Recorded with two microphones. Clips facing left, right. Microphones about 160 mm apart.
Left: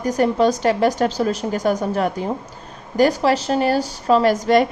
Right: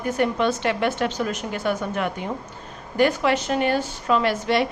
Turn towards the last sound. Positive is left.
turn(degrees=45)  # may be behind; listen again after turning